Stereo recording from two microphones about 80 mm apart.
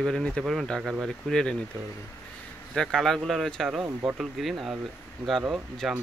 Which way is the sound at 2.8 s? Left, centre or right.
Centre.